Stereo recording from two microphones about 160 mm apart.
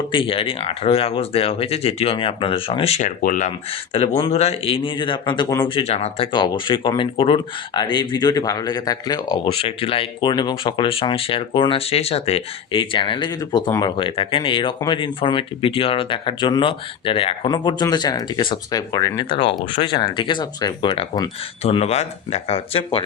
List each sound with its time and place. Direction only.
0.1 s speech: 35° left (ahead or behind)
3.2 s speech: 55° left (ahead or behind)
3.9 s speech: 35° left (ahead or behind)